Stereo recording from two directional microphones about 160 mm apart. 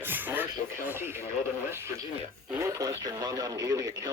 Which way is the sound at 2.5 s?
20° right (ahead or behind).